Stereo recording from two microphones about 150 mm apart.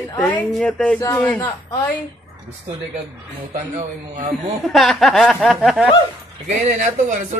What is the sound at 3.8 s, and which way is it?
Speech, 55° right (ahead or behind).